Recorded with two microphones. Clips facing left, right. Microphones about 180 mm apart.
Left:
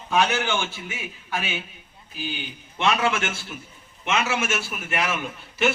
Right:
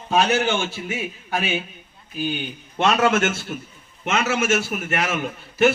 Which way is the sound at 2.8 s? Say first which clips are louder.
Right 5 dB; 45° right (ahead or behind).